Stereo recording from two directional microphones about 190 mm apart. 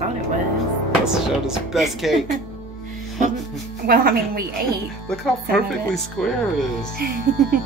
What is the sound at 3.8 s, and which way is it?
Speech, 50° right (ahead or behind).